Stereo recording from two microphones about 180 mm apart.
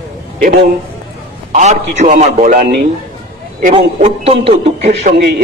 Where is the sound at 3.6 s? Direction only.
40° right (ahead or behind).